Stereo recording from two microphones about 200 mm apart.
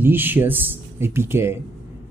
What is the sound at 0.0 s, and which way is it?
Speech, 10° right (ahead or behind).